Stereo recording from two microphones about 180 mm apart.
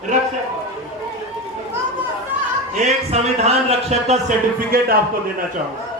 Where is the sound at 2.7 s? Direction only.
40° right (ahead or behind).